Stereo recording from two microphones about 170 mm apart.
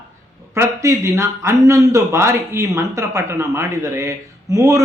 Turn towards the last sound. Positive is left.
turn(degrees=-20)  # may be behind; listen again after turning